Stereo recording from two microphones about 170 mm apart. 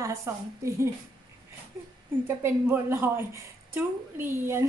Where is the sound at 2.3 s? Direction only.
15° right (ahead or behind).